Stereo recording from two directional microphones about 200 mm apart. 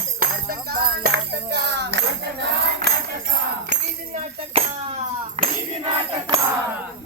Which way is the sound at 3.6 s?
40° right (ahead or behind).